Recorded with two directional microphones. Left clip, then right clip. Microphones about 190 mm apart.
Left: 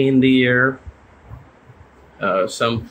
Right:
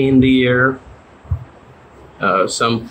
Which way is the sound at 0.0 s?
5° left (ahead or behind).